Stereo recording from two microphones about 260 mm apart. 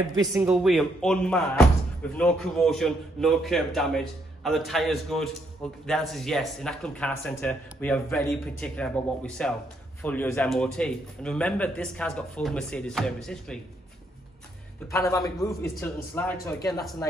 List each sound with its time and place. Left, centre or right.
0.2 s a man's voice: centre
14.9 s speech: centre